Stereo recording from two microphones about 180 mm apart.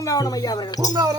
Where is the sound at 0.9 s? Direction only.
20° right (ahead or behind).